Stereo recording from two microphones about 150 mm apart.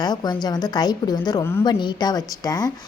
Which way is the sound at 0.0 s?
25° left (ahead or behind).